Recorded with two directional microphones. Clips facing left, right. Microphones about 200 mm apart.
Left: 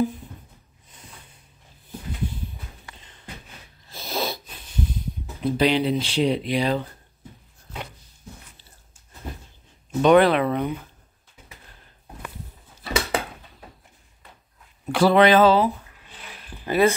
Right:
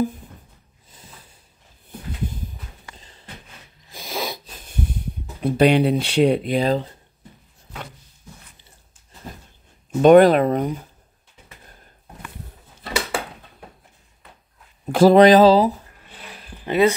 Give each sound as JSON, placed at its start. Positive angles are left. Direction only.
{"t": 3.0, "sound": "a sound", "side_deg": -35}
{"t": 3.8, "sound": "a sound", "side_deg": -15}
{"t": 5.4, "sound": "speech", "side_deg": -60}
{"t": 10.0, "sound": "speech", "side_deg": -45}
{"t": 14.9, "sound": "speech", "side_deg": -45}
{"t": 16.6, "sound": "speech", "side_deg": -20}